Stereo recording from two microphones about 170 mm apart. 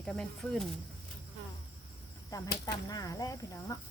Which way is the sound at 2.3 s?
20° left (ahead or behind).